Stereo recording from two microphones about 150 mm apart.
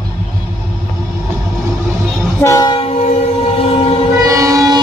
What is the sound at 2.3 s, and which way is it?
Train, 20° left (ahead or behind).